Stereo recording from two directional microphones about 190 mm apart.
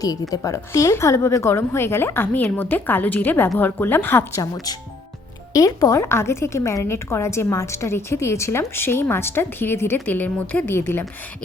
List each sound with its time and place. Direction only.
0.0 s a woman's voice: 20° left (ahead or behind)
5.5 s a woman's voice: 15° left (ahead or behind)